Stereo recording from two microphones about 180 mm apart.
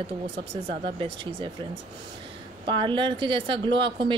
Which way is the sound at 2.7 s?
25° right (ahead or behind).